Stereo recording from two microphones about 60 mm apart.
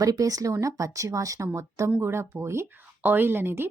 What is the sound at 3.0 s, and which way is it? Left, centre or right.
Speech, right.